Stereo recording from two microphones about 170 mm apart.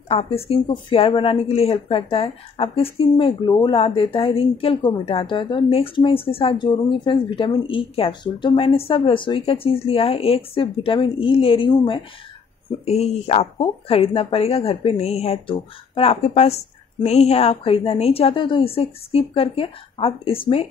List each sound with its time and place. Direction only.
0.1 s speech: 35° left (ahead or behind)